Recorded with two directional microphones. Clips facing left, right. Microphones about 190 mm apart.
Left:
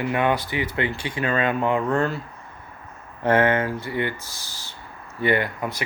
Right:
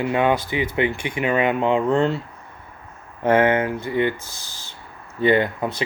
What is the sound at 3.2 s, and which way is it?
Speech, 15° right (ahead or behind).